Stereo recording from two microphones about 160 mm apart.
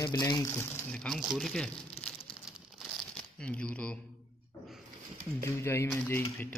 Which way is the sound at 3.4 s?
5° left (ahead or behind).